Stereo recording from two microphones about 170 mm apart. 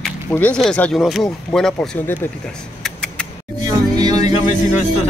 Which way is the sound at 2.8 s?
5° left (ahead or behind).